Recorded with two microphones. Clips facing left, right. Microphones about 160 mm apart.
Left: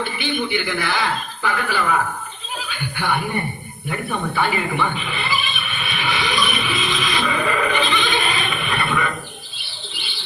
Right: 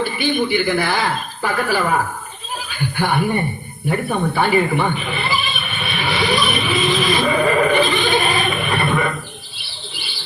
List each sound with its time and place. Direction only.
0.0 s speech: 45° right (ahead or behind)
3.8 s speech: 45° right (ahead or behind)
5.8 s a sound: 40° right (ahead or behind)